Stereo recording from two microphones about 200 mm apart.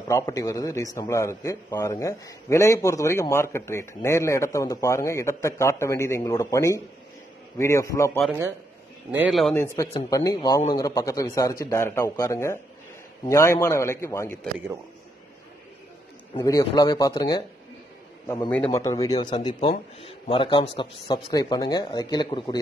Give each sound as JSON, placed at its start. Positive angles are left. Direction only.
{"t": 0.1, "sound": "a man's voice", "side_deg": 15}
{"t": 9.1, "sound": "a man's voice", "side_deg": -5}
{"t": 16.3, "sound": "a man's voice", "side_deg": 15}
{"t": 18.8, "sound": "a man's voice", "side_deg": 15}